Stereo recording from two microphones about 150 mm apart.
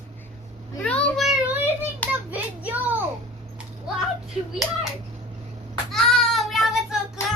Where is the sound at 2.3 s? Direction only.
10° right (ahead or behind).